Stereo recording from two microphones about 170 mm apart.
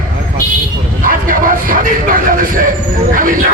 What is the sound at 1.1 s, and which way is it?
A man's voice, 55° right (ahead or behind).